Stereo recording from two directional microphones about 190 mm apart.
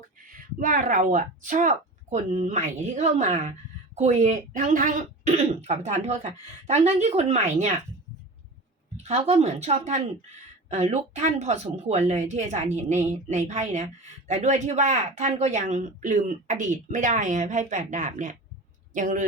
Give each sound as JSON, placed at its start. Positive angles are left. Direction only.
{"t": 0.3, "sound": "speech", "side_deg": -45}
{"t": 9.0, "sound": "speech", "side_deg": -35}